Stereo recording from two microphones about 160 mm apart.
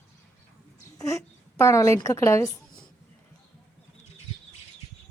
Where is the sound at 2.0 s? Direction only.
20° left (ahead or behind).